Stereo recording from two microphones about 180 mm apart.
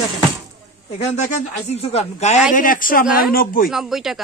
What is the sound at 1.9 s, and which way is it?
Speech, 40° left (ahead or behind).